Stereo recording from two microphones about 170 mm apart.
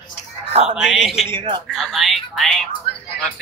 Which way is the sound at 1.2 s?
30° right (ahead or behind).